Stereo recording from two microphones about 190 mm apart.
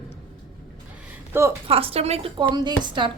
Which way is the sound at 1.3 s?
15° right (ahead or behind).